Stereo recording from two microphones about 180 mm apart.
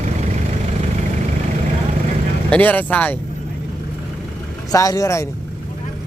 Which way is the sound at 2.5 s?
10° left (ahead or behind).